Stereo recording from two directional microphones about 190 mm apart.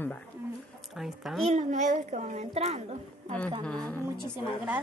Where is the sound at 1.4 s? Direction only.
40° right (ahead or behind).